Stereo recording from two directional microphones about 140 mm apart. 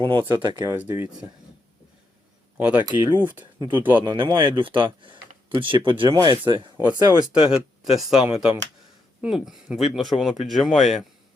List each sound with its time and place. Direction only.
0.0 s speech: 35° right (ahead or behind)
0.7 s speech: 15° right (ahead or behind)
2.6 s speech: 10° right (ahead or behind)
3.6 s speech: 35° right (ahead or behind)
7.5 s speech: 5° right (ahead or behind)